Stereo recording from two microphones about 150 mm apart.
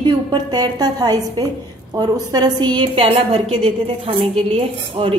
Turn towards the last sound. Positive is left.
turn(degrees=-35)  # may be behind; listen again after turning